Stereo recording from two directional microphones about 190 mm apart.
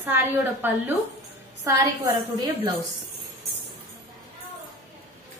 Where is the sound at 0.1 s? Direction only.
10° right (ahead or behind).